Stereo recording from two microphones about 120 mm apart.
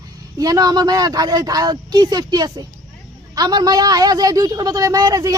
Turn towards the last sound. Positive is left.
turn(degrees=-30)  # may be behind; listen again after turning